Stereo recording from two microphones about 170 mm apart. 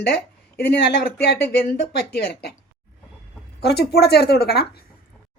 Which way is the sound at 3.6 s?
70° left (ahead or behind).